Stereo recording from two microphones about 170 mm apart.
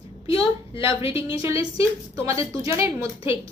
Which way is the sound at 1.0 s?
30° left (ahead or behind).